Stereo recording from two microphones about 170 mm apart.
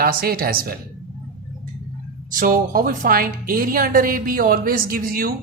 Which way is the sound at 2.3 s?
55° right (ahead or behind).